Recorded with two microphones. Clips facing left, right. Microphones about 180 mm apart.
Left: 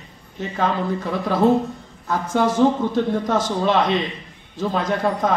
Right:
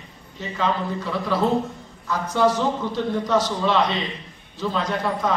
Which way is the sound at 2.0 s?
50° left (ahead or behind).